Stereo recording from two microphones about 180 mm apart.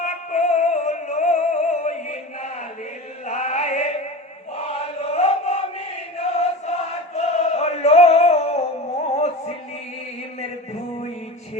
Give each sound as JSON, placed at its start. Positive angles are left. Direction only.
{"t": 0.0, "sound": "music", "side_deg": 40}
{"t": 3.2, "sound": "chant", "side_deg": 40}
{"t": 9.1, "sound": "music", "side_deg": 35}